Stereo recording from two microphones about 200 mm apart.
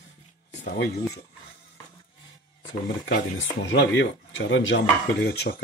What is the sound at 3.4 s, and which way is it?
Speech, 65° left (ahead or behind).